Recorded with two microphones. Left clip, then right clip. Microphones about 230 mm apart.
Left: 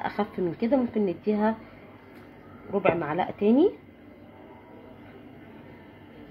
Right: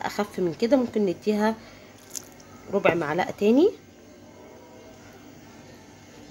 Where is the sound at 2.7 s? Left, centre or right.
Right.